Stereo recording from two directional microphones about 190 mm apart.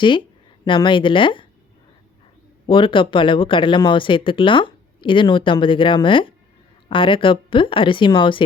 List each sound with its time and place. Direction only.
0.6 s speech: 25° left (ahead or behind)
2.6 s speech: 25° left (ahead or behind)